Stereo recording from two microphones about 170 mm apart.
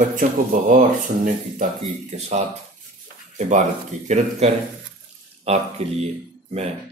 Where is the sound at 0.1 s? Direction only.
50° right (ahead or behind).